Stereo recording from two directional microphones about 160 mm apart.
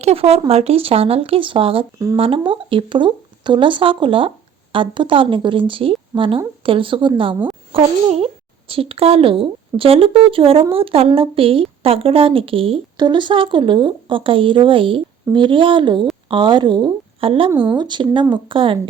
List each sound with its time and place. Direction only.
0.0 s a woman's voice: 40° right (ahead or behind)
17.5 s speech: 10° right (ahead or behind)
17.7 s speech: 30° right (ahead or behind)